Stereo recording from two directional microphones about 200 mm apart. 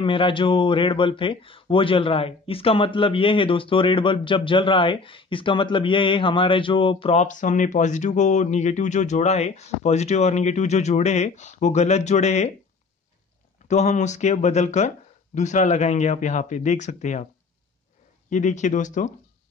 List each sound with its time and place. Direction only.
0.0 s speech: 25° left (ahead or behind)
13.7 s speech: 35° left (ahead or behind)
18.3 s speech: 35° left (ahead or behind)